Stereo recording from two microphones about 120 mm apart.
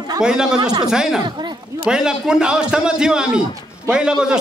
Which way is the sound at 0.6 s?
35° right (ahead or behind).